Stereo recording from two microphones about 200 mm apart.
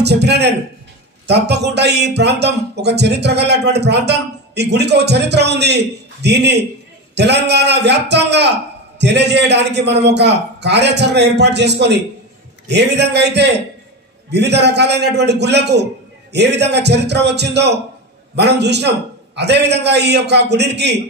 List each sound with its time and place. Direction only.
0.0 s a man's voice: 55° right (ahead or behind)